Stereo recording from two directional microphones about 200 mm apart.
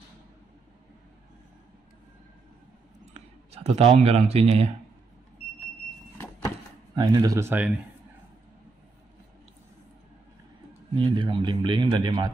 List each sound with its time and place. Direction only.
3.1 s a sound: 35° right (ahead or behind)
4.0 s speech: 30° right (ahead or behind)
7.0 s speech: 20° right (ahead or behind)
11.0 s a man's voice: 25° right (ahead or behind)